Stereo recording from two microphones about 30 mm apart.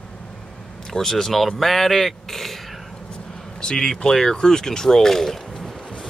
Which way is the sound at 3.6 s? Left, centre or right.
Centre.